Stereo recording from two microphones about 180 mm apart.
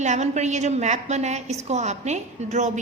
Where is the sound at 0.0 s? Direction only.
40° right (ahead or behind).